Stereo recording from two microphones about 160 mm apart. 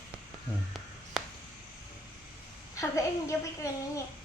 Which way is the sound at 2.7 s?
20° left (ahead or behind).